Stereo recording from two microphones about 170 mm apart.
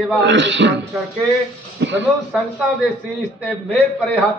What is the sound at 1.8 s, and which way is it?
Speech, 90° right.